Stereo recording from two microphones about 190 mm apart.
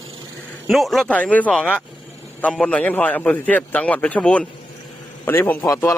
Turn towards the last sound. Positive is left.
turn(degrees=15)  # may be behind; listen again after turning